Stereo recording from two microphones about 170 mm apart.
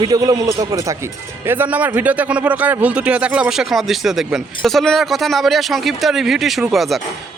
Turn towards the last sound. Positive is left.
turn(degrees=0)  # may be behind; listen again after turning